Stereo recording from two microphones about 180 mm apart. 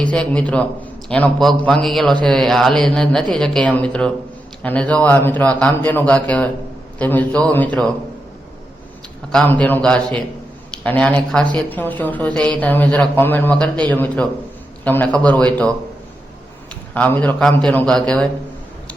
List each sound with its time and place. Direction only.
0.0 s a man's voice: 5° left (ahead or behind)
9.3 s speech: 5° left (ahead or behind)
16.9 s speech: 10° left (ahead or behind)